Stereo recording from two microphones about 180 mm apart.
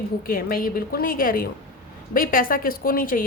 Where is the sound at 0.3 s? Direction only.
55° left (ahead or behind).